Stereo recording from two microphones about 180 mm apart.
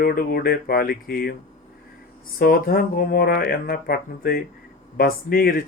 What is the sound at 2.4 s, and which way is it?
Speech, 55° left (ahead or behind).